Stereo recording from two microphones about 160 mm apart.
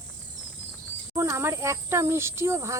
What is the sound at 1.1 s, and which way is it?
Speech, 15° right (ahead or behind).